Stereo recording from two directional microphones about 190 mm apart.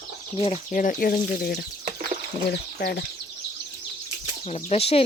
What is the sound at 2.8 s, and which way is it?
Speech, 55° left (ahead or behind).